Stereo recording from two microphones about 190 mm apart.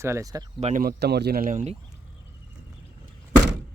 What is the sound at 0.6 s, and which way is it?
Speech, 35° right (ahead or behind).